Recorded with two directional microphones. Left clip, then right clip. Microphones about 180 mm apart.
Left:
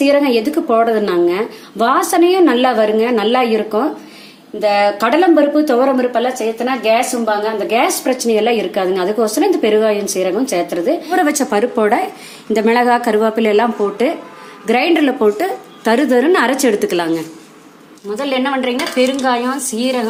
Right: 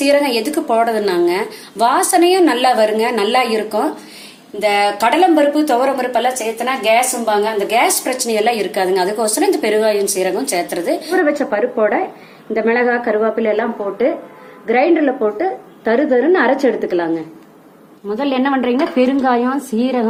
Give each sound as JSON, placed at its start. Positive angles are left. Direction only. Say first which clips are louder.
{"t": 0.0, "sound": "a woman's voice", "louder": "left 1 dB", "side_deg": 50}
{"t": 11.2, "sound": "a woman's voice", "louder": "even", "side_deg": 90}
{"t": 18.2, "sound": "speech", "louder": "even", "side_deg": -30}